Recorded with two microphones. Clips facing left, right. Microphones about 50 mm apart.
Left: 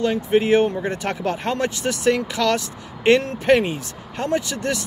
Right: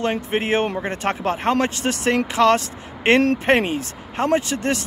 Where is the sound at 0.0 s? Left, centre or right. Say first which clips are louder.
Left 3 dB; right.